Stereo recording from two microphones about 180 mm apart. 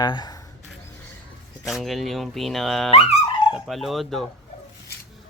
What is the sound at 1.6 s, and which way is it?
Speech, centre (ahead or behind).